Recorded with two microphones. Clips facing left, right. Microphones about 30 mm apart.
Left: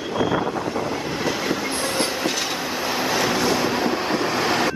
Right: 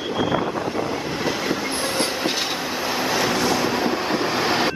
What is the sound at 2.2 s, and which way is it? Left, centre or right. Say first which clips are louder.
Train: even; centre.